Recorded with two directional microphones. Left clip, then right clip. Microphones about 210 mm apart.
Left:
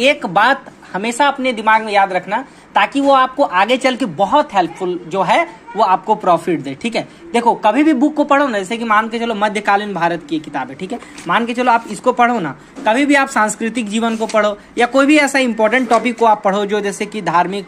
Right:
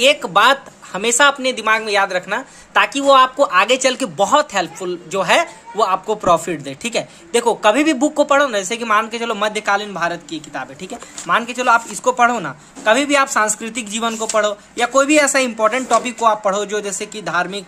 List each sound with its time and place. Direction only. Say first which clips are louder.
0.0 s speech: even; 10° right (ahead or behind)